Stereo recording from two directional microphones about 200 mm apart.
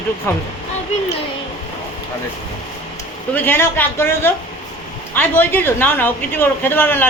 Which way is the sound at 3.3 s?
10° left (ahead or behind).